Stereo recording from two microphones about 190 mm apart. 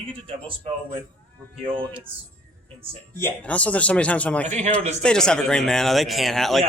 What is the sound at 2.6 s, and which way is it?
Speech, 30° right (ahead or behind).